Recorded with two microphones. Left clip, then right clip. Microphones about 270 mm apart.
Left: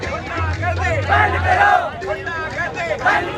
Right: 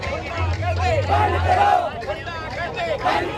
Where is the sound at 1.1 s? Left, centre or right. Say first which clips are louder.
Left 5 dB; left.